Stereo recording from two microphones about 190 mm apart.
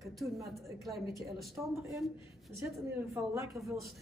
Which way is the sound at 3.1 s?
15° right (ahead or behind).